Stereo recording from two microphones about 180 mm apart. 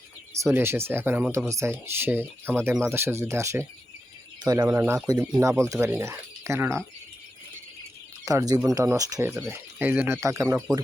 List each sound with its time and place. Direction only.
0.3 s speech: 15° right (ahead or behind)
8.2 s speech: 20° right (ahead or behind)